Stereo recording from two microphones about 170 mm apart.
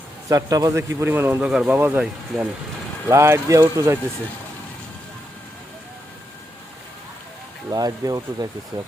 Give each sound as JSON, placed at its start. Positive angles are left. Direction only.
{"t": 0.3, "sound": "a man's voice", "side_deg": -20}
{"t": 7.7, "sound": "speech", "side_deg": -20}